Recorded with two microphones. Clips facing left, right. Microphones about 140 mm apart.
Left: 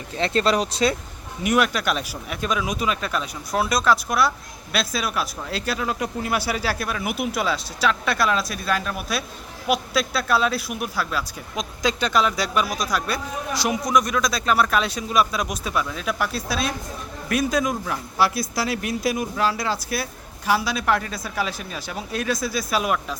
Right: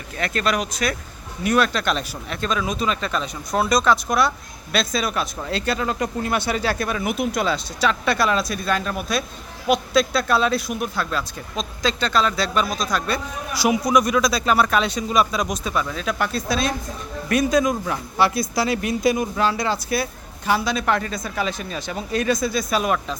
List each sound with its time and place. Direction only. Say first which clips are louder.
0.2 s speech: left 2 dB; 25° left (ahead or behind)
1.5 s speech: right 1 dB; 15° left (ahead or behind)
13.5 s speech: right 3 dB; 5° right (ahead or behind)